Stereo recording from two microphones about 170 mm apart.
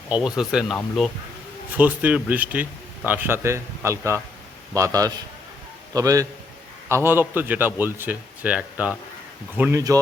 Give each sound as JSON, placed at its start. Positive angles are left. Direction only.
{"t": 0.1, "sound": "speech", "side_deg": -5}
{"t": 1.8, "sound": "a man's voice", "side_deg": -10}